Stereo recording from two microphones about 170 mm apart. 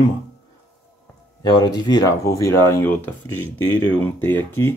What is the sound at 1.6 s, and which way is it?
Speech, 25° left (ahead or behind).